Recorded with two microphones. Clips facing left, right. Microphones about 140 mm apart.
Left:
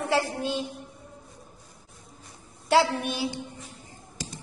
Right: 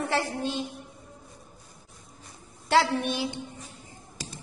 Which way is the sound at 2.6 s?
10° left (ahead or behind).